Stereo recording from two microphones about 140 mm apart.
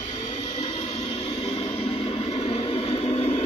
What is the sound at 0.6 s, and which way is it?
Vehicle, 50° left (ahead or behind).